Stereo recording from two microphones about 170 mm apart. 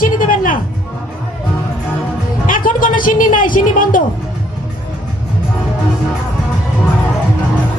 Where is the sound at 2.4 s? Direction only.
55° left (ahead or behind).